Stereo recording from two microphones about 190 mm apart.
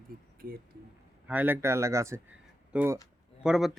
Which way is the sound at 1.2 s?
10° right (ahead or behind).